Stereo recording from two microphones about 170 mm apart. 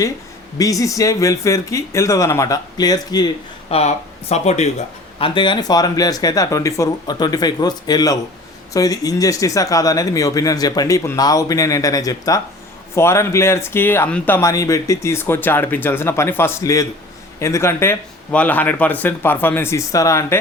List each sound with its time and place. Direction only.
0.6 s speech: 20° left (ahead or behind)
3.7 s speech: 40° left (ahead or behind)
5.2 s speech: 30° left (ahead or behind)